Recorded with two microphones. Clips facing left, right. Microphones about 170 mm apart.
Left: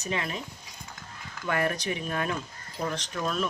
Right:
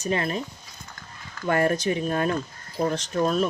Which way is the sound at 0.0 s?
40° right (ahead or behind).